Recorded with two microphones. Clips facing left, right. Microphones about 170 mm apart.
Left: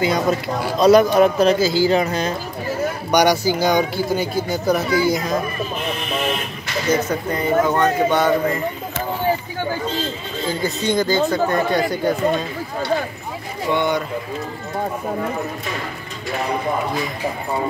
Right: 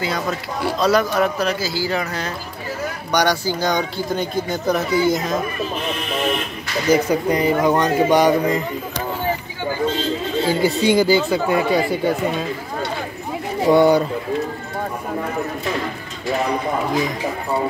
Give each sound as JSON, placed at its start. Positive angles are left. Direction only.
{"t": 0.0, "sound": "speech", "side_deg": 20}
{"t": 7.1, "sound": "speech", "side_deg": -15}
{"t": 10.6, "sound": "speech", "side_deg": -10}
{"t": 13.7, "sound": "speech", "side_deg": -35}